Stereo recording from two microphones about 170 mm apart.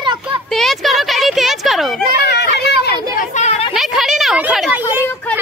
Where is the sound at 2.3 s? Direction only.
80° left.